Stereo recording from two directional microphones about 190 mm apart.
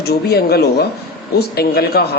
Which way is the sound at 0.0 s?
55° left (ahead or behind).